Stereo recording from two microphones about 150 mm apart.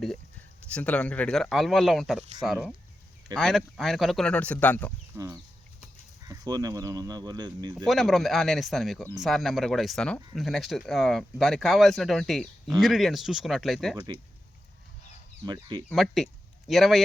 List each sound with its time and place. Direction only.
0.7 s speech: 10° left (ahead or behind)
5.1 s speech: 20° right (ahead or behind)
7.9 s speech: centre (ahead or behind)
15.4 s speech: 30° right (ahead or behind)
16.0 s speech: centre (ahead or behind)